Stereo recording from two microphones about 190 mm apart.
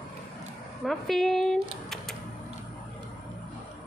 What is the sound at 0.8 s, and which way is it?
Speech, centre (ahead or behind).